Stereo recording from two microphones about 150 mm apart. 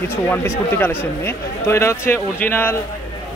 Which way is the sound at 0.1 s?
15° left (ahead or behind).